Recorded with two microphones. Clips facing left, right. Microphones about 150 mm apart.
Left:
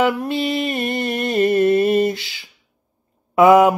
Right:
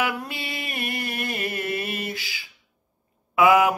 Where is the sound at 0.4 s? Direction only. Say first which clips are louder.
Left 12 dB; 30° left (ahead or behind).